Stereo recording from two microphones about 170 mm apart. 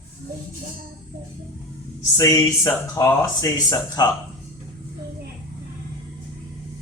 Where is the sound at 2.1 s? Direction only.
20° left (ahead or behind).